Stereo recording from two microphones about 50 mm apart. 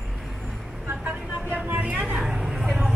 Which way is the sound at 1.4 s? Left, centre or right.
Right.